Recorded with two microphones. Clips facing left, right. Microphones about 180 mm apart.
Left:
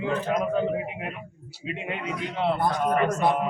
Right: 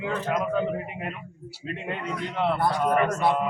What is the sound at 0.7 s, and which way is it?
A man's voice, 10° left (ahead or behind).